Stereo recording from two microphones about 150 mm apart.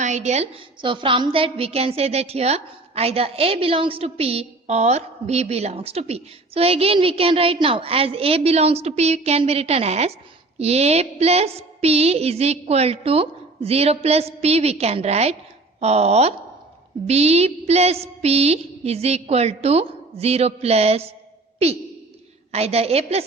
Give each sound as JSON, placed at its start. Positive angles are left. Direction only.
{"t": 0.0, "sound": "a woman's voice", "side_deg": -50}
{"t": 0.8, "sound": "a woman's voice", "side_deg": -35}
{"t": 22.5, "sound": "a woman's voice", "side_deg": -45}